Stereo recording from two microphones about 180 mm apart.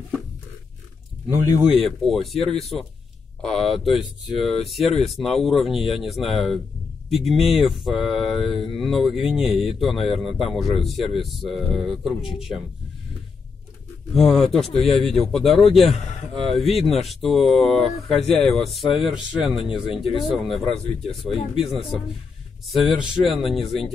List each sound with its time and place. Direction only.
1.3 s speech: 10° right (ahead or behind)
1.8 s speech: centre (ahead or behind)
14.1 s speech: centre (ahead or behind)
19.6 s speech: 30° left (ahead or behind)
20.0 s speech: centre (ahead or behind)